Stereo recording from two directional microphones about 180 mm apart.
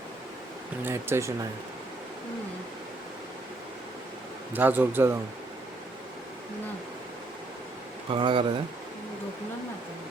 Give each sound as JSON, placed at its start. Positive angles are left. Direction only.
{"t": 0.9, "sound": "speech", "side_deg": -15}
{"t": 4.5, "sound": "speech", "side_deg": -10}
{"t": 8.1, "sound": "speech", "side_deg": -30}